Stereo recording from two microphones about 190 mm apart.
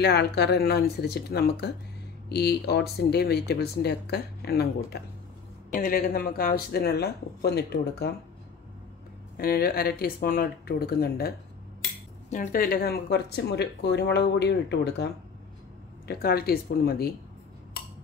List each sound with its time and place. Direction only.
0.0 s speech: 60° left (ahead or behind)
9.4 s speech: 50° left (ahead or behind)
16.1 s speech: 55° left (ahead or behind)